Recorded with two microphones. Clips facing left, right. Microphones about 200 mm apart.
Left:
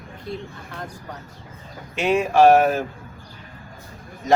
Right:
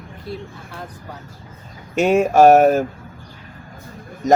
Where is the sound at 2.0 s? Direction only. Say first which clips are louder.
Right 4 dB; 45° right (ahead or behind).